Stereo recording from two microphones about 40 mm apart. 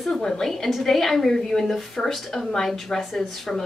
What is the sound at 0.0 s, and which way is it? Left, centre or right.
A woman's voice, centre.